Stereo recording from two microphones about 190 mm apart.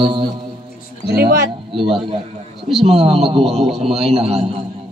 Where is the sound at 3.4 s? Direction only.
Centre (ahead or behind).